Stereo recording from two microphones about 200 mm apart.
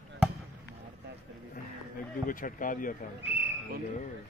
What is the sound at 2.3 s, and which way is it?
Speech, 40° left (ahead or behind).